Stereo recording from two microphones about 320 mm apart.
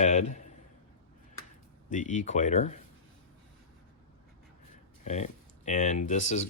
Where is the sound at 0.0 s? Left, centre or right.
Left.